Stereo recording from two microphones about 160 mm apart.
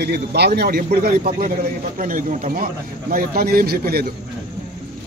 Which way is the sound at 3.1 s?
75° right (ahead or behind).